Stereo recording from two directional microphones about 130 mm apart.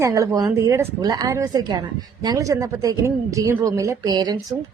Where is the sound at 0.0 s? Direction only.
25° right (ahead or behind).